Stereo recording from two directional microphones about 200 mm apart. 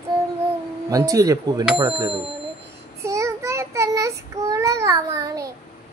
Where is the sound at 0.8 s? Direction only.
15° right (ahead or behind).